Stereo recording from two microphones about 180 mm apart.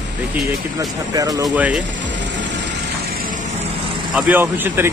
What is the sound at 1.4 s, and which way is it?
Speech, 5° right (ahead or behind).